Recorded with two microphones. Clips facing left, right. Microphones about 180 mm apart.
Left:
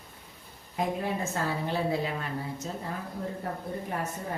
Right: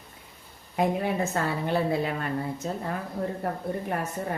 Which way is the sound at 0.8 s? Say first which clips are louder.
Right 5 dB; 65° right (ahead or behind).